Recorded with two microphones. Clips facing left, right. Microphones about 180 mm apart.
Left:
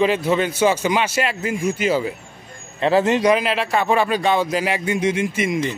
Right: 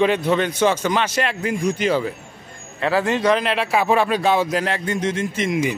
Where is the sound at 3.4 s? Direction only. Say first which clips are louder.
Even; centre (ahead or behind).